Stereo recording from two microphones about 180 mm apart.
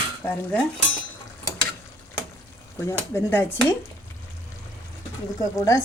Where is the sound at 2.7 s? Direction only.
15° left (ahead or behind).